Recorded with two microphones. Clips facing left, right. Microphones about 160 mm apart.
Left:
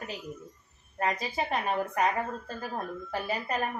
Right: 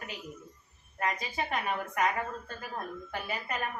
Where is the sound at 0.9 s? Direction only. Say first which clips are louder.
Left 3 dB; 30° left (ahead or behind).